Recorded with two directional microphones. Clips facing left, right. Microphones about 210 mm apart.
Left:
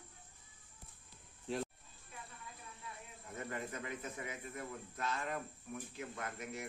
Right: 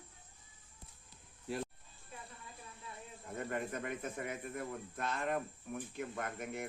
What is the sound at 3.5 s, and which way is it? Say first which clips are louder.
Speech: right 4 dB; 50° right (ahead or behind).